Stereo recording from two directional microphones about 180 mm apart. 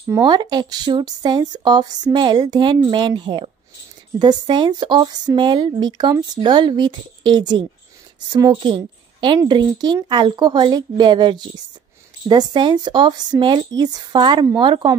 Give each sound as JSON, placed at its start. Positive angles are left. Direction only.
{"t": 0.0, "sound": "speech", "side_deg": -20}